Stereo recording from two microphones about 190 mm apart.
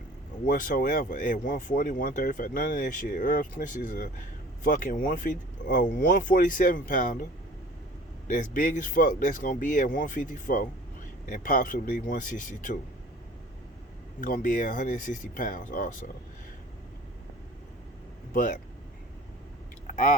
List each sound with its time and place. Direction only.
0.4 s speech: 45° left (ahead or behind)
8.3 s speech: 45° left (ahead or behind)
14.2 s speech: 45° left (ahead or behind)
18.3 s speech: 40° left (ahead or behind)
19.9 s speech: 40° left (ahead or behind)